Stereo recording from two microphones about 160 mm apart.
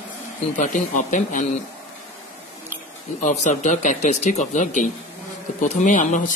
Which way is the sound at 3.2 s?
50° left (ahead or behind).